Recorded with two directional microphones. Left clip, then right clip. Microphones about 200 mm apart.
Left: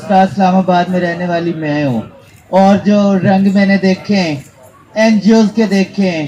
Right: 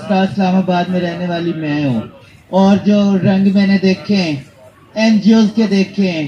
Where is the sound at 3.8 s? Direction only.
20° left (ahead or behind).